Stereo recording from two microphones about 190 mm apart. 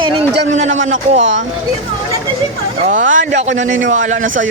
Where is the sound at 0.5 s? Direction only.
40° right (ahead or behind).